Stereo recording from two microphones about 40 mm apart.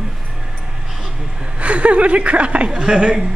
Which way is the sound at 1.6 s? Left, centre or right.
Right.